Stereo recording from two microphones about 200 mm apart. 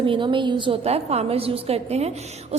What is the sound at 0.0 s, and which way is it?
A woman's voice, 25° right (ahead or behind).